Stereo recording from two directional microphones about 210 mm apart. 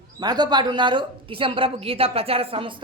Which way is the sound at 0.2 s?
20° right (ahead or behind).